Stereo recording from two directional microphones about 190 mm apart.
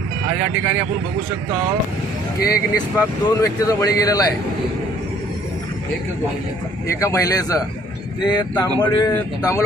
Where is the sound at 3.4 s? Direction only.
15° left (ahead or behind).